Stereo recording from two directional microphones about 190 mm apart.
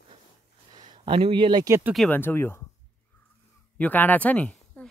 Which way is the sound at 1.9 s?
5° left (ahead or behind).